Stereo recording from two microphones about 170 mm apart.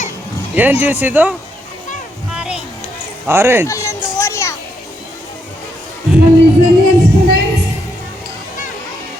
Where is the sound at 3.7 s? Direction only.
15° left (ahead or behind).